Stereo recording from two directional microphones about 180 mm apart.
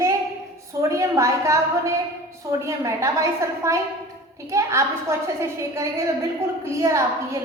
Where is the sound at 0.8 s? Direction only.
15° right (ahead or behind).